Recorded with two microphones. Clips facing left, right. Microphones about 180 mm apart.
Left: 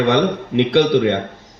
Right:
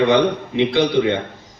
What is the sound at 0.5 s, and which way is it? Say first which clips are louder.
Speech: left 3 dB; 60° left (ahead or behind).